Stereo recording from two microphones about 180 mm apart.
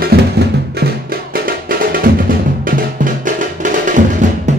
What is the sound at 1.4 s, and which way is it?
Music, 55° right (ahead or behind).